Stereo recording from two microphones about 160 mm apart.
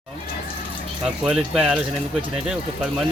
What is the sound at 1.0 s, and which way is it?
Speech, 5° right (ahead or behind).